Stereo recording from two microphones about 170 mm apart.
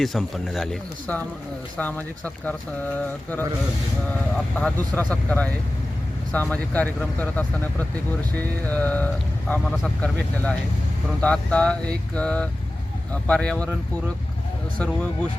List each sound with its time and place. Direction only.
0.0 s speech: centre (ahead or behind)
4.9 s speech: 10° left (ahead or behind)
14.8 s speech: 5° left (ahead or behind)